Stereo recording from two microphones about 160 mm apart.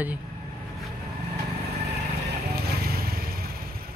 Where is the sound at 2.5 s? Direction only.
70° right (ahead or behind).